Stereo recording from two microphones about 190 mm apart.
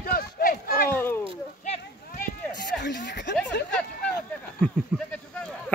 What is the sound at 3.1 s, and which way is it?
Snicker, 65° left (ahead or behind).